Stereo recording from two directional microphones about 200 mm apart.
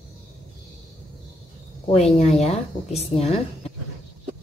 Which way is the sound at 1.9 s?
30° left (ahead or behind).